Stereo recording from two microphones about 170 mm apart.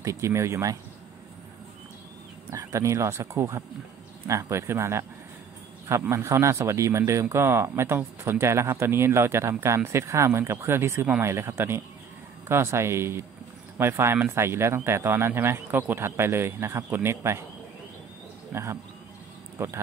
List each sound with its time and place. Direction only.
0.0 s a man's voice: 15° right (ahead or behind)
2.5 s a man's voice: 20° right (ahead or behind)
18.5 s a man's voice: 15° right (ahead or behind)